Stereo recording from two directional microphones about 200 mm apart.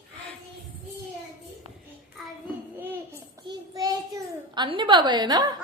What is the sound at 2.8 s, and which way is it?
Child singing, 10° right (ahead or behind).